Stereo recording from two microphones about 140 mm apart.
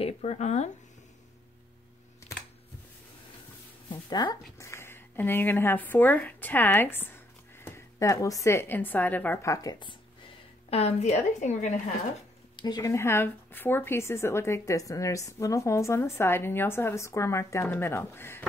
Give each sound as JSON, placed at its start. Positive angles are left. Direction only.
{"t": 0.0, "sound": "speech", "side_deg": 50}
{"t": 4.1, "sound": "speech", "side_deg": 30}
{"t": 10.7, "sound": "speech", "side_deg": 50}
{"t": 12.5, "sound": "speech", "side_deg": 30}